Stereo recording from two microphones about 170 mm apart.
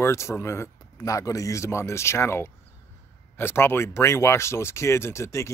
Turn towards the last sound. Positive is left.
turn(degrees=15)  # may be behind; listen again after turning